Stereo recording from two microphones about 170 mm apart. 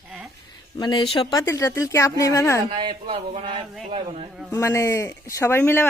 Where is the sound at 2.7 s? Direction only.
30° right (ahead or behind).